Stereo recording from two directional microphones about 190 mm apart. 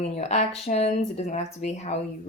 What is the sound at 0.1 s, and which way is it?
Speech, 35° left (ahead or behind).